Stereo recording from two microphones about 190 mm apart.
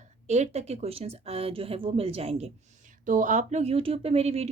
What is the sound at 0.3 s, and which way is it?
A woman's voice, 35° right (ahead or behind).